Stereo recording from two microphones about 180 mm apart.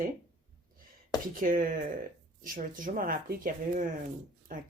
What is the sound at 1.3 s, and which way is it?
Speech, 50° right (ahead or behind).